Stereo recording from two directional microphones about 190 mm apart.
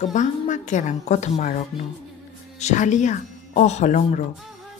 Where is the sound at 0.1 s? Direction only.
40° left (ahead or behind).